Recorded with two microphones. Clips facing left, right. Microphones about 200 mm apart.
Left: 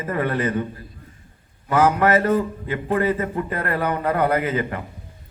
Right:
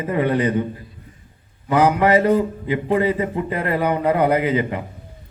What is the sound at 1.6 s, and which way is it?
A man's voice, 15° right (ahead or behind).